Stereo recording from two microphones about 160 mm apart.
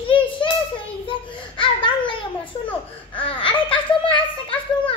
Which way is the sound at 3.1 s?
35° left (ahead or behind).